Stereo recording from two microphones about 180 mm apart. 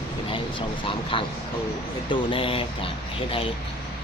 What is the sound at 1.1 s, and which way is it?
Speech, 30° left (ahead or behind).